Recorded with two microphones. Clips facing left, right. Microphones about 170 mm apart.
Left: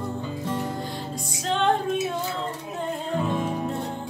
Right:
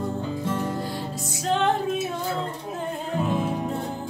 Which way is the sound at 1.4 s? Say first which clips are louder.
Right 1 dB; 5° right (ahead or behind).